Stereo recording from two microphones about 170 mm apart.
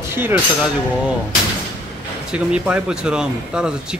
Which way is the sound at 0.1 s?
15° right (ahead or behind).